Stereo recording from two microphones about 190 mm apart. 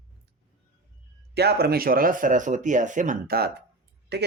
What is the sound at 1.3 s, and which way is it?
Speech, 60° right (ahead or behind).